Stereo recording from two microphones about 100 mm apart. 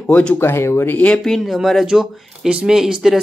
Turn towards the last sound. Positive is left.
turn(degrees=-5)  # may be behind; listen again after turning